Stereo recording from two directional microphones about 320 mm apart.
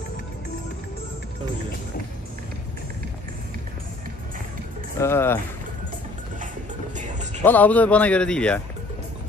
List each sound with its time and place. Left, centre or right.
4.9 s speech: centre
7.0 s music: right
7.4 s a man's voice: centre